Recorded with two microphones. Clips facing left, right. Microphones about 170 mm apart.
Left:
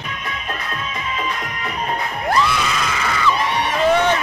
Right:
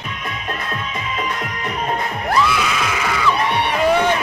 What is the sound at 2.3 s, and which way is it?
Screaming, 5° right (ahead or behind).